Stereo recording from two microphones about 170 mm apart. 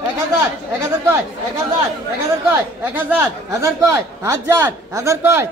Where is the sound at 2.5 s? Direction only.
10° right (ahead or behind).